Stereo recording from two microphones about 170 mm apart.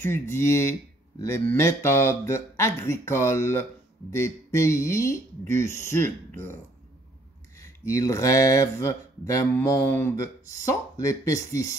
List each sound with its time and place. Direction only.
0.0 s speech: 15° left (ahead or behind)
7.5 s speech: 15° left (ahead or behind)